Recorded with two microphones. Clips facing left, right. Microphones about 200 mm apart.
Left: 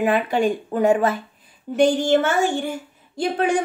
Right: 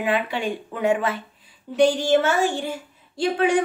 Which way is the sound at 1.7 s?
55° left (ahead or behind).